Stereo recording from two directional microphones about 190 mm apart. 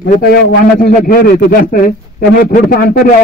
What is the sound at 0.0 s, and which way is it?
A man's voice, 50° left (ahead or behind).